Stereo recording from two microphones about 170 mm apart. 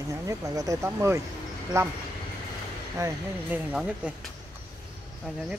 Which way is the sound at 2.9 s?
15° right (ahead or behind).